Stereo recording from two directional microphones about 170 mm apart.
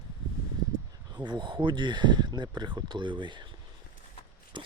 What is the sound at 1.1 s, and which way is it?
Speech, 25° right (ahead or behind).